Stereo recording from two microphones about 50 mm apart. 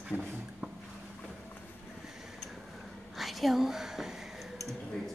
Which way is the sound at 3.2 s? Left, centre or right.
Centre.